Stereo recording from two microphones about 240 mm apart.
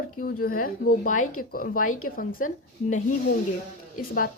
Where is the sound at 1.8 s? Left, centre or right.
Left.